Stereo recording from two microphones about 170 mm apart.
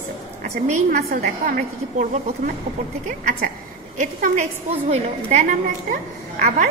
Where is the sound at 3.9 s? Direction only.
45° right (ahead or behind).